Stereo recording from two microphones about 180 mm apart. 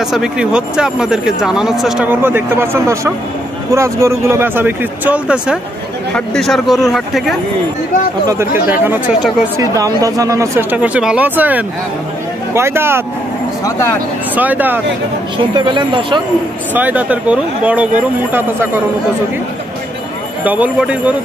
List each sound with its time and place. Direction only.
0.1 s speech: 5° right (ahead or behind)
8.3 s speech: 15° right (ahead or behind)
13.7 s speech: 15° left (ahead or behind)
14.3 s speech: 10° right (ahead or behind)
15.3 s speech: 25° right (ahead or behind)
16.7 s speech: 10° right (ahead or behind)
20.4 s speech: 10° right (ahead or behind)